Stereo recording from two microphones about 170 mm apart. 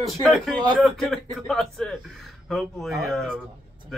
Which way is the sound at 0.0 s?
Centre (ahead or behind).